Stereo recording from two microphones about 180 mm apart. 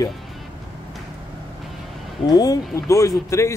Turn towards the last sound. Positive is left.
turn(degrees=15)  # may be behind; listen again after turning